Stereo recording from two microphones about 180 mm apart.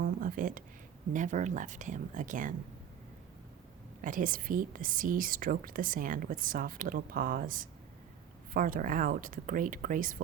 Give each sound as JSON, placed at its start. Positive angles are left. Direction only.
{"t": 0.0, "sound": "a sound", "side_deg": -50}
{"t": 1.1, "sound": "a woman's voice", "side_deg": -45}
{"t": 4.0, "sound": "a woman's voice", "side_deg": -50}